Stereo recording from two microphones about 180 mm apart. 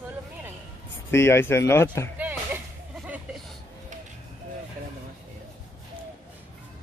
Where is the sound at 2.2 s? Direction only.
10° right (ahead or behind).